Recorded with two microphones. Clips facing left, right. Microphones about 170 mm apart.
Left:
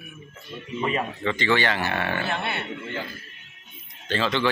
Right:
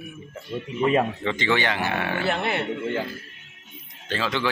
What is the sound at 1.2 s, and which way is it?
Speech, 20° right (ahead or behind).